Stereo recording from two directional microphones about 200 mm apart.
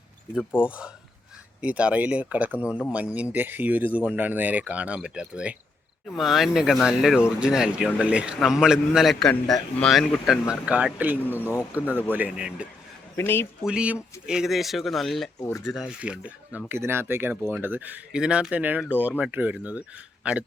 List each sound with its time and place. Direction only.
0.6 s speech: 5° right (ahead or behind)
13.1 s speech: 10° left (ahead or behind)
13.7 s speech: 5° right (ahead or behind)
15.4 s speech: 15° left (ahead or behind)
15.7 s speech: 5° right (ahead or behind)